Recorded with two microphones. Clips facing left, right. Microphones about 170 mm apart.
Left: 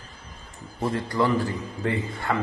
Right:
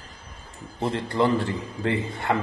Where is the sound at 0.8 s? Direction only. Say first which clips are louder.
Right 1 dB; 25° right (ahead or behind).